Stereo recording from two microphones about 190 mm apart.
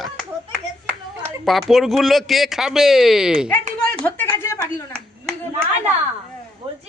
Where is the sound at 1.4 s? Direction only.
Centre (ahead or behind).